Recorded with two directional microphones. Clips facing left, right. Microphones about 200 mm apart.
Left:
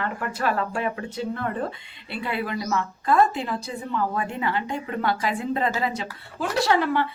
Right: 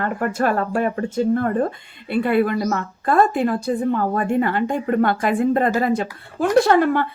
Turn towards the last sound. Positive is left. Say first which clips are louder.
# right 7 dB
turn(degrees=-50)  # may be behind; listen again after turning